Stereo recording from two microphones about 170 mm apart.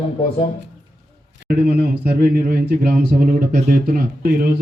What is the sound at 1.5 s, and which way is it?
A man's voice, 65° right (ahead or behind).